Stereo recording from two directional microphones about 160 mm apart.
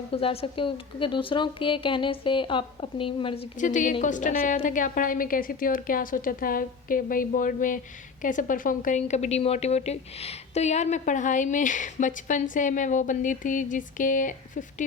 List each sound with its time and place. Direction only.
0.1 s speech: 35° left (ahead or behind)
3.6 s a woman's voice: 50° left (ahead or behind)